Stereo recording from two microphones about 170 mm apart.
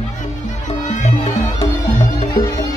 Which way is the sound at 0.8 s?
45° left (ahead or behind).